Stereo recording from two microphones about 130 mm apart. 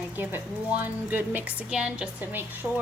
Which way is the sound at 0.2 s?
15° right (ahead or behind).